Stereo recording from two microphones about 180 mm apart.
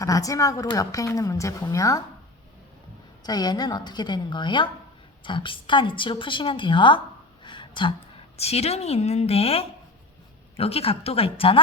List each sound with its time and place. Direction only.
0.0 s a woman's voice: 20° left (ahead or behind)
3.2 s a woman's voice: 20° left (ahead or behind)
7.4 s a sound: 25° left (ahead or behind)
8.4 s a woman's voice: 35° left (ahead or behind)